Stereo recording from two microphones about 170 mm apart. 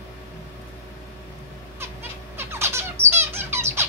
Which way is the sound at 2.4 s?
15° right (ahead or behind).